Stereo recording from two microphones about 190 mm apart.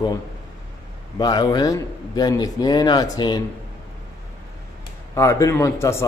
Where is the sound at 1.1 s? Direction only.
20° left (ahead or behind).